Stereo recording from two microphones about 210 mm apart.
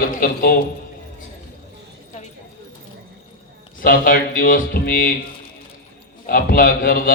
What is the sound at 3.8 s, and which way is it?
A man's voice, 40° left (ahead or behind).